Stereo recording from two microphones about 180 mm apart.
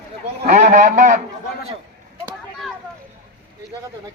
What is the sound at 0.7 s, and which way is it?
Speech, 45° right (ahead or behind).